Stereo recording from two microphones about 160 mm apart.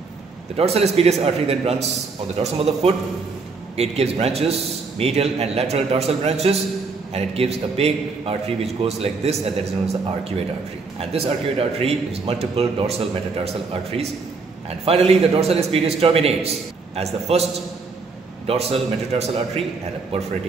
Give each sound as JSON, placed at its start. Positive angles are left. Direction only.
{"t": 0.6, "sound": "a man's voice", "side_deg": -40}
{"t": 11.0, "sound": "a man's voice", "side_deg": -40}
{"t": 15.0, "sound": "a man's voice", "side_deg": -40}
{"t": 18.5, "sound": "a man's voice", "side_deg": -35}